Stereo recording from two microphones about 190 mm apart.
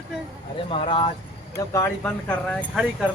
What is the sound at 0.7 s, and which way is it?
Speech, 30° left (ahead or behind).